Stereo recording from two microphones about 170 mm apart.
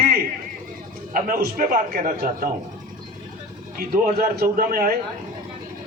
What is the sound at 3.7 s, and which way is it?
A man's voice, 60° right (ahead or behind).